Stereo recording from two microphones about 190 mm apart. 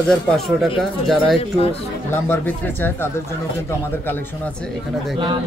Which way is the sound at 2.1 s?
10° left (ahead or behind).